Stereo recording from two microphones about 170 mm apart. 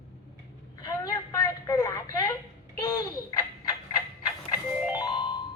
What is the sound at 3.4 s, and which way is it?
Frog, 25° left (ahead or behind).